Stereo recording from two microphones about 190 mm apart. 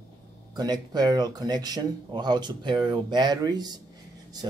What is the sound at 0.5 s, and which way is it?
Speech, 20° right (ahead or behind).